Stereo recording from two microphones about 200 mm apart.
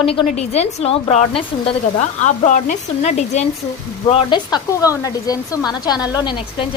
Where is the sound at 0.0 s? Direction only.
30° left (ahead or behind).